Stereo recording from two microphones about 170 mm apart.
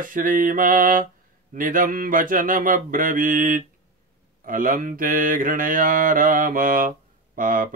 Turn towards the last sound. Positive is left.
turn(degrees=-55)  # may be behind; listen again after turning